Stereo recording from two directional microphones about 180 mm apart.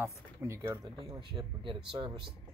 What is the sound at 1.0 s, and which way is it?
Speech, 25° right (ahead or behind).